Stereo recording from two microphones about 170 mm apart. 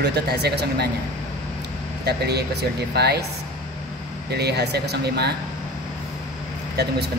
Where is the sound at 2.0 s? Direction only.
75° right (ahead or behind).